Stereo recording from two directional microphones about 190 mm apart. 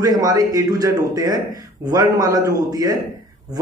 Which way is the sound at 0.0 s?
20° right (ahead or behind).